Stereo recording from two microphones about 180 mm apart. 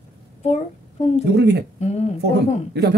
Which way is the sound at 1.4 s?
70° right (ahead or behind).